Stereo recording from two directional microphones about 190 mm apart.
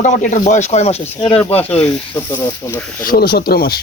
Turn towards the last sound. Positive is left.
turn(degrees=55)  # may be behind; listen again after turning